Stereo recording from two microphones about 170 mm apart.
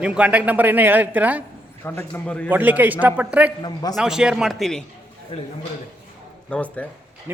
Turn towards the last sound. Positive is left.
turn(degrees=10)  # may be behind; listen again after turning